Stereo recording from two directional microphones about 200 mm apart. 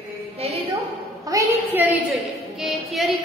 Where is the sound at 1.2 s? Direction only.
15° right (ahead or behind).